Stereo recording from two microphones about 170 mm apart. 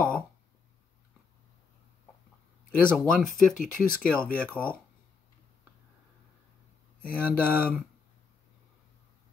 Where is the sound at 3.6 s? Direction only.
55° left (ahead or behind).